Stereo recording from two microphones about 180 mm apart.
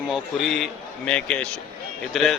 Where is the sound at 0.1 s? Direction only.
Centre (ahead or behind).